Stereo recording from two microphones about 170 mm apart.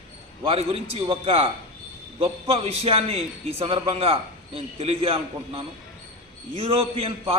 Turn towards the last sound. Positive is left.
turn(degrees=-35)  # may be behind; listen again after turning